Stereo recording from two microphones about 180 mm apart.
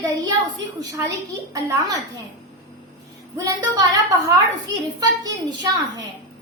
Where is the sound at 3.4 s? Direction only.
20° right (ahead or behind).